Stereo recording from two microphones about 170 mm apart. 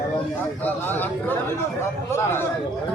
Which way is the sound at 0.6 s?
10° left (ahead or behind).